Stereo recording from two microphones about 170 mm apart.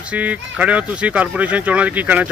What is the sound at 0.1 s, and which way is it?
Speech, 10° right (ahead or behind).